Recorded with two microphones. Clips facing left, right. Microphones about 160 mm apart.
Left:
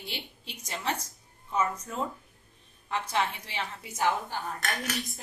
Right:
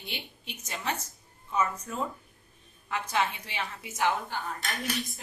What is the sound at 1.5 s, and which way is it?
Music, 30° left (ahead or behind).